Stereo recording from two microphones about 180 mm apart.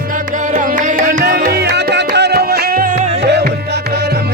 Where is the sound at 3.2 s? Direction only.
70° right (ahead or behind).